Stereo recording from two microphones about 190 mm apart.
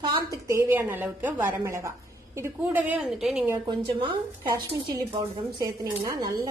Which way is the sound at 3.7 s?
25° right (ahead or behind).